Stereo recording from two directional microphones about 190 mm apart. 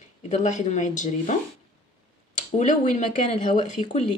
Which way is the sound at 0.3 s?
40° left (ahead or behind).